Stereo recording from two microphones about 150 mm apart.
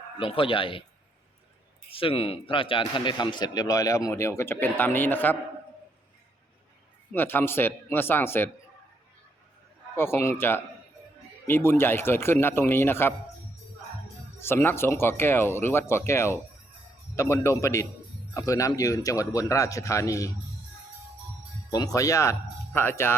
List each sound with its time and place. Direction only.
0.2 s speech: 35° left (ahead or behind)
1.9 s speech: 35° left (ahead or behind); by 5.4 s 10° left (ahead or behind)
7.1 s speech: 15° left (ahead or behind)
9.9 s speech: 15° left (ahead or behind)
14.3 s speech: 15° left (ahead or behind)
21.7 s speech: 25° left (ahead or behind)